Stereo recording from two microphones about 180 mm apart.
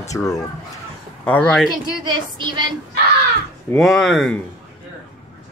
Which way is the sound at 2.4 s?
25° right (ahead or behind).